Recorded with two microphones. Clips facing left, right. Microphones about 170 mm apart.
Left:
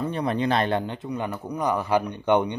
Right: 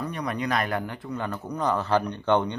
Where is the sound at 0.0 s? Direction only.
30° left (ahead or behind).